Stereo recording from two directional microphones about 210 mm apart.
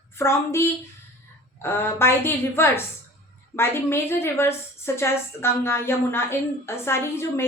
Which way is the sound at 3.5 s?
10° left (ahead or behind).